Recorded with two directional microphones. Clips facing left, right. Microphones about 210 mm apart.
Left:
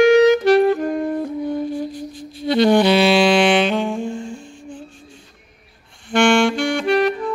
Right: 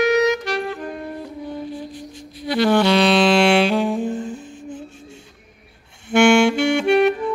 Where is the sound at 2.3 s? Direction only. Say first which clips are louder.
Left 3 dB; 20° left (ahead or behind); by 4.8 s 5° right (ahead or behind).